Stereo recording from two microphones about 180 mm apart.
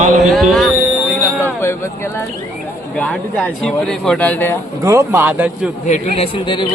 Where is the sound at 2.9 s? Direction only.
5° left (ahead or behind).